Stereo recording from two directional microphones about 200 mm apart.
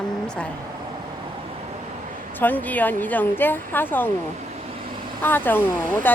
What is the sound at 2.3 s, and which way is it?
Speech, 10° left (ahead or behind).